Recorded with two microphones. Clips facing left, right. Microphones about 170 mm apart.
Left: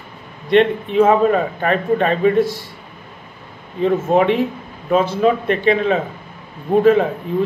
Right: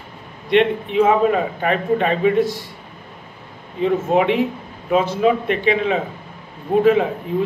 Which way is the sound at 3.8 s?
15° right (ahead or behind).